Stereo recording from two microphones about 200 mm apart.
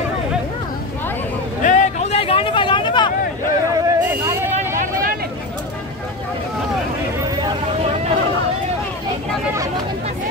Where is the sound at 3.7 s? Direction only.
15° right (ahead or behind).